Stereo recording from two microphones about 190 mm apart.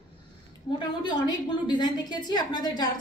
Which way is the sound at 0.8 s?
25° left (ahead or behind).